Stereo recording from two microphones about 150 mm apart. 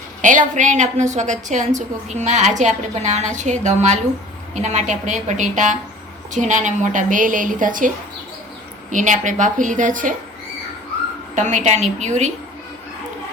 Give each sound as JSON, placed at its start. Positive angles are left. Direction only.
{"t": 0.2, "sound": "a woman's voice", "side_deg": -55}
{"t": 11.3, "sound": "a woman's voice", "side_deg": -55}